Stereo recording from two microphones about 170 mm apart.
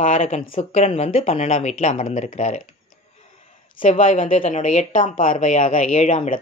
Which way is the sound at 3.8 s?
50° left (ahead or behind).